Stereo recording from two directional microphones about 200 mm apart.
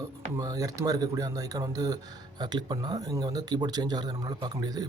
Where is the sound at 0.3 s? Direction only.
20° right (ahead or behind).